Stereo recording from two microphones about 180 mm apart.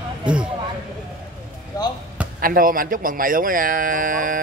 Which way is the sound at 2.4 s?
50° right (ahead or behind).